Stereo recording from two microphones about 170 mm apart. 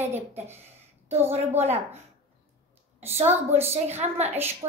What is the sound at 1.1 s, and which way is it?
Speech, 40° right (ahead or behind).